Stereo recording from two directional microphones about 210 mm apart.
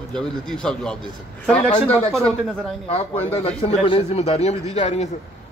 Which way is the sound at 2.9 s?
25° left (ahead or behind).